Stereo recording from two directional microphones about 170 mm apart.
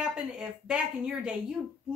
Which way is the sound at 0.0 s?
5° right (ahead or behind).